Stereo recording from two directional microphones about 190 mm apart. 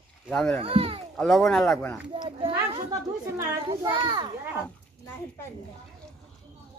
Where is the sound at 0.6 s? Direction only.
30° right (ahead or behind).